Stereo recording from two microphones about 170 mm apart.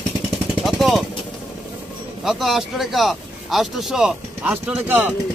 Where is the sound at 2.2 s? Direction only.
Centre (ahead or behind).